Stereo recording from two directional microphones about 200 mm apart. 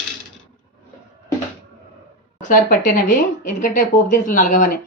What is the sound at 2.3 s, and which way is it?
Speech, 40° left (ahead or behind).